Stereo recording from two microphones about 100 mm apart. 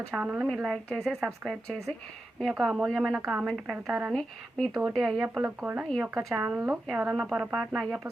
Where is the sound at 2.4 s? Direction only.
Centre (ahead or behind).